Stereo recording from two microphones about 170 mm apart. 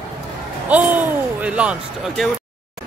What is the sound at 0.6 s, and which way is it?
Speech, 10° right (ahead or behind).